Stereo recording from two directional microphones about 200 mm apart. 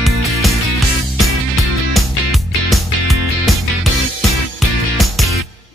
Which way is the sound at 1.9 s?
Centre (ahead or behind).